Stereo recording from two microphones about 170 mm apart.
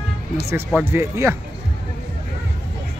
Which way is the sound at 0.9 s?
15° right (ahead or behind).